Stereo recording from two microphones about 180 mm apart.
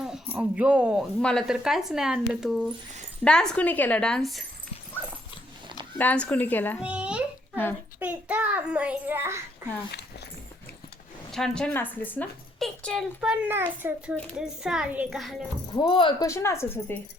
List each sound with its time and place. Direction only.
0.0 s a woman's voice: 5° right (ahead or behind)
6.0 s a woman's voice: 10° left (ahead or behind)
6.7 s a sound: 5° right (ahead or behind)
7.9 s child singing: 10° right (ahead or behind)
11.3 s a woman's voice: centre (ahead or behind)
15.7 s speech: 25° left (ahead or behind)
16.3 s a woman's voice: 15° left (ahead or behind)